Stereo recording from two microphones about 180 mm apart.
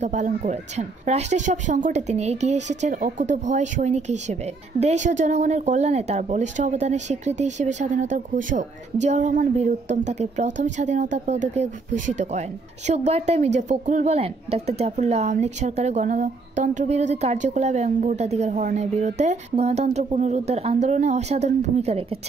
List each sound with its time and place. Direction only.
0.0 s a woman's voice: 40° right (ahead or behind)